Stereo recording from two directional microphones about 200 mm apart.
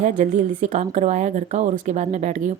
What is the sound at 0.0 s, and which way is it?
Speech, 35° right (ahead or behind).